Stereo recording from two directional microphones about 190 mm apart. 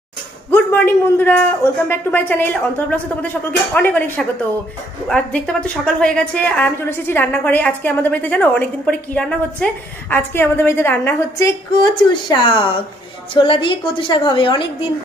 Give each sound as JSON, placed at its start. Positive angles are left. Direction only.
{"t": 0.5, "sound": "a woman's voice", "side_deg": 10}